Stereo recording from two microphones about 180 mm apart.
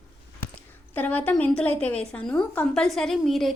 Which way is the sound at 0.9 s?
10° left (ahead or behind).